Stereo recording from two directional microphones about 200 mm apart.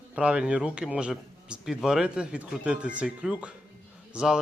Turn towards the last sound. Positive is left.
turn(degrees=-5)  # may be behind; listen again after turning